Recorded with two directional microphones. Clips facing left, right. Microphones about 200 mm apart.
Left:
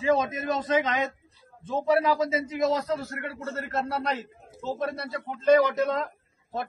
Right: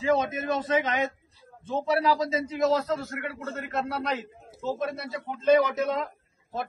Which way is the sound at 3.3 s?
Centre (ahead or behind).